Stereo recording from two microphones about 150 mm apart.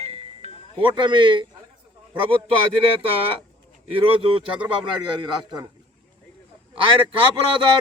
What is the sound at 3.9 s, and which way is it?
A man's voice, 35° right (ahead or behind).